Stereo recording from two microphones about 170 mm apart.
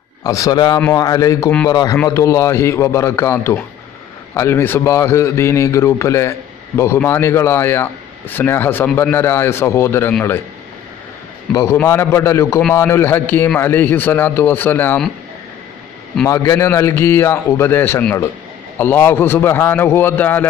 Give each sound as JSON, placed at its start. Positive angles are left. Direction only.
{"t": 0.2, "sound": "a man's voice", "side_deg": 20}
{"t": 11.5, "sound": "speech", "side_deg": 15}
{"t": 16.3, "sound": "speech", "side_deg": 20}